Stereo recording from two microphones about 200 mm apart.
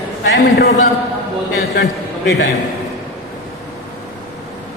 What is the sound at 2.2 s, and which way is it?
Speech, 60° left (ahead or behind).